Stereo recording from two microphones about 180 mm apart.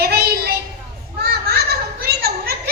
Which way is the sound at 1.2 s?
60° right (ahead or behind).